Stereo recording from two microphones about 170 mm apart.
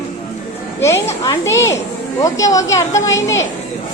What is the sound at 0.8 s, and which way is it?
A woman's voice, 15° left (ahead or behind).